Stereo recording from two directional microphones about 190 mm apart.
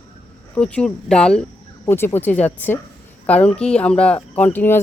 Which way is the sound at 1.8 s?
15° left (ahead or behind).